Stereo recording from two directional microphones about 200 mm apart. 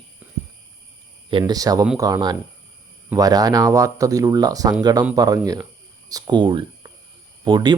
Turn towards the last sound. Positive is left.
turn(degrees=-20)  # may be behind; listen again after turning